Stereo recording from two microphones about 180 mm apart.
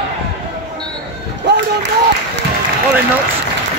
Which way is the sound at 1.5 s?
70° right (ahead or behind).